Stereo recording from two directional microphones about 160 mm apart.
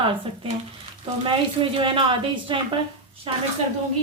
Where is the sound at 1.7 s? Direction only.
35° right (ahead or behind).